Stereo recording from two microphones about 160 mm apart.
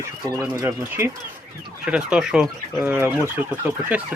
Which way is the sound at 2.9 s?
15° right (ahead or behind).